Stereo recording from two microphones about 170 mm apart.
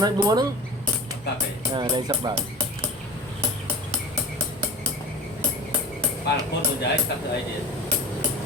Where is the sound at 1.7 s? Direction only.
25° right (ahead or behind).